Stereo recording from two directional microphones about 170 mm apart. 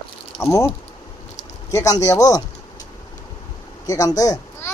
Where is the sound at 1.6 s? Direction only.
20° left (ahead or behind).